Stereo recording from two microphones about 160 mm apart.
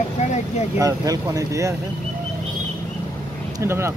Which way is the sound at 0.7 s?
20° right (ahead or behind).